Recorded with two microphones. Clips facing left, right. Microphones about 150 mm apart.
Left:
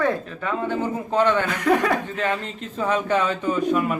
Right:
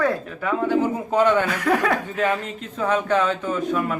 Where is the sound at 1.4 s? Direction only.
Centre (ahead or behind).